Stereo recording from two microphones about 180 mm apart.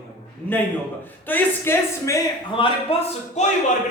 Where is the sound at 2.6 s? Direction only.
35° left (ahead or behind).